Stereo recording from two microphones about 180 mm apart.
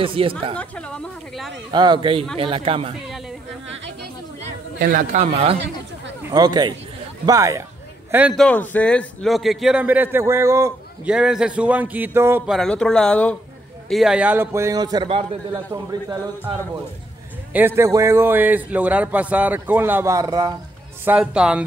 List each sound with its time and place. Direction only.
0.0 s a man's voice: 30° right (ahead or behind)
0.6 s a sound: 5° left (ahead or behind)
1.7 s a man's voice: 25° right (ahead or behind)
3.6 s a sound: 90° right
4.7 s a man's voice: 50° right (ahead or behind); by 5.6 s 35° right (ahead or behind)
6.3 s a man's voice: 20° right (ahead or behind)
8.4 s a man's voice: 10° left (ahead or behind); by 10.7 s 15° right (ahead or behind)
11.1 s a man's voice: 5° right (ahead or behind)
12.4 s a man's voice: centre (ahead or behind); by 16.8 s 20° right (ahead or behind)
17.5 s a man's voice: 10° right (ahead or behind)
21.0 s a man's voice: 10° right (ahead or behind)